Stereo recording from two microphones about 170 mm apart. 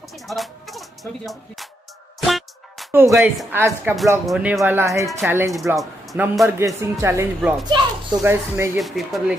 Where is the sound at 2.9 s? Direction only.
15° right (ahead or behind).